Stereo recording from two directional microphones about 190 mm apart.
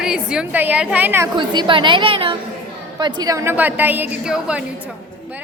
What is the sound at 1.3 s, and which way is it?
A woman's voice, 25° right (ahead or behind).